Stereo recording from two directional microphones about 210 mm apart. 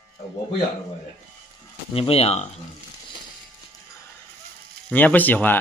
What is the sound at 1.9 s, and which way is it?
Speech, 25° left (ahead or behind).